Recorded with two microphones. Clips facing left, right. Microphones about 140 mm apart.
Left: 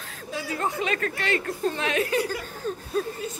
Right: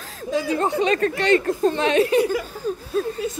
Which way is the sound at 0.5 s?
30° right (ahead or behind).